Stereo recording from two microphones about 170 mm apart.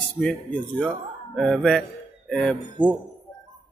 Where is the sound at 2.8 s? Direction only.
10° right (ahead or behind).